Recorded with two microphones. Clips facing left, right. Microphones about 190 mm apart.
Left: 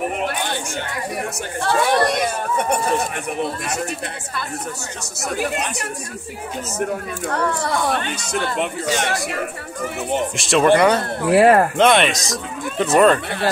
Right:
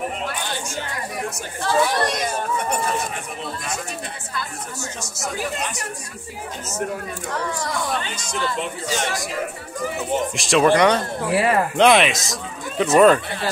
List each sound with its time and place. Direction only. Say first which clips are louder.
0.3 s chatter: left 4 dB; 60° left (ahead or behind)
1.7 s speech: left 2 dB; 60° left (ahead or behind)
7.3 s speech: left 5 dB; 65° left (ahead or behind)
10.3 s speech: left 2 dB; centre (ahead or behind)
11.3 s speech: left 7 dB; 55° left (ahead or behind)
11.7 s speech: even; centre (ahead or behind)